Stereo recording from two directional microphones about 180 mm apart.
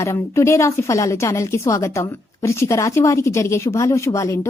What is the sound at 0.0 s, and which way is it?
Speech, 15° left (ahead or behind).